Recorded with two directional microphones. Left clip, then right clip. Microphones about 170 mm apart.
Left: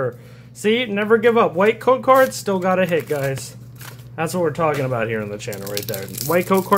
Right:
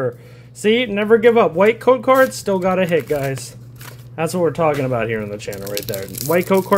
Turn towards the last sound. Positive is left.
turn(degrees=-15)  # may be behind; listen again after turning